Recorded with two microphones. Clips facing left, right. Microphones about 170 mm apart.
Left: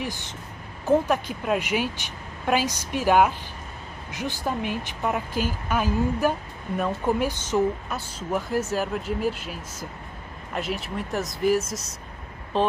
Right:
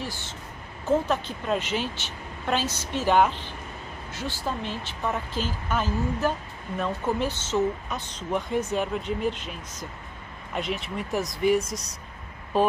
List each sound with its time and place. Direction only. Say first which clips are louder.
0.0 s speech: left 3 dB; 15° left (ahead or behind)
12.5 s speech: right 1 dB; 10° right (ahead or behind)